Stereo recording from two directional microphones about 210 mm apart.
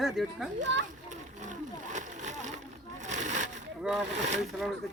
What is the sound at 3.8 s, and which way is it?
Speech, 5° right (ahead or behind).